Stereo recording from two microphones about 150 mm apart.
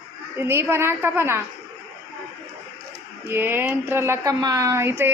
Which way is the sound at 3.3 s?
15° right (ahead or behind).